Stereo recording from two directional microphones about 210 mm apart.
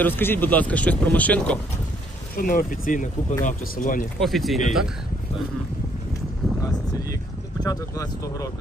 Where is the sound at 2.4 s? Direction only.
40° left (ahead or behind).